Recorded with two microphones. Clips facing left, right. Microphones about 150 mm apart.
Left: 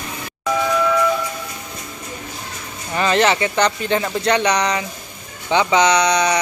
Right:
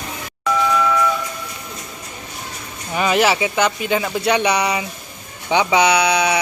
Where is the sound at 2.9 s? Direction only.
10° right (ahead or behind).